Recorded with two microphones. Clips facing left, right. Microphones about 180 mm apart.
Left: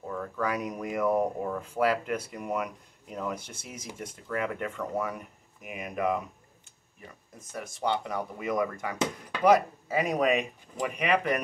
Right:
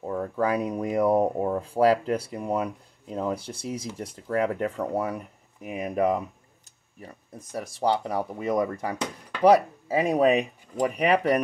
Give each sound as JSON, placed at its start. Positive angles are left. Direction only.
{"t": 0.0, "sound": "speech", "side_deg": -30}
{"t": 8.9, "sound": "speech", "side_deg": 5}
{"t": 9.4, "sound": "speech", "side_deg": -30}